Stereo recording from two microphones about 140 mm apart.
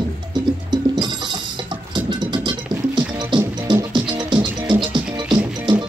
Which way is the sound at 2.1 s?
30° right (ahead or behind).